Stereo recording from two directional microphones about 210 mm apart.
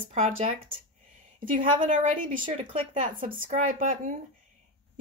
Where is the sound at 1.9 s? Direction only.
30° right (ahead or behind).